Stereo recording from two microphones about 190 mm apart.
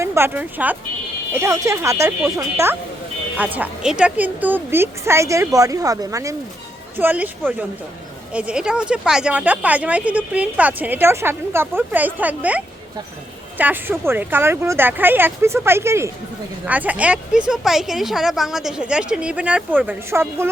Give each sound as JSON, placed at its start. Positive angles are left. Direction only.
{"t": 0.0, "sound": "speech", "side_deg": -15}